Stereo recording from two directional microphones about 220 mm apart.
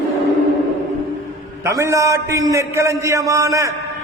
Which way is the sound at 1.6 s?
15° right (ahead or behind).